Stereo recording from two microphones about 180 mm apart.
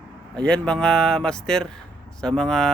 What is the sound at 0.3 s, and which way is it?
Speech, 5° left (ahead or behind).